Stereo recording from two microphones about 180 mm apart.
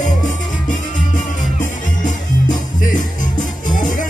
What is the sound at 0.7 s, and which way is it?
Music, 45° left (ahead or behind).